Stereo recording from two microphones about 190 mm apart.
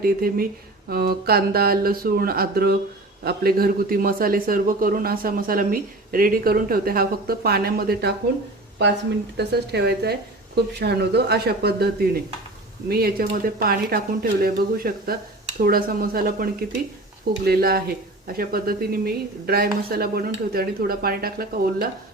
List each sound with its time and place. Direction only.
0.0 s a man's voice: 50° right (ahead or behind)
9.4 s a woman's voice: 60° right (ahead or behind)